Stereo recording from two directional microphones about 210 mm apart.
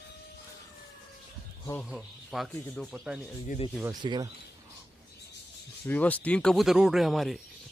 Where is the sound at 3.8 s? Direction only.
20° right (ahead or behind).